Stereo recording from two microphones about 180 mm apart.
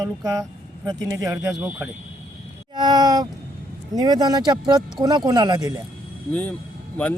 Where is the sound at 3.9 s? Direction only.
20° right (ahead or behind).